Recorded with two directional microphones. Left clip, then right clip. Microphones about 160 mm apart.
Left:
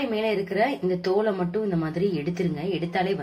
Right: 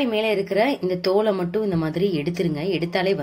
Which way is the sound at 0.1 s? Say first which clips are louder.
Right 4 dB; 50° right (ahead or behind).